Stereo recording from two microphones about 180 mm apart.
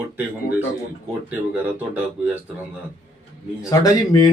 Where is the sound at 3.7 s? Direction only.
20° left (ahead or behind).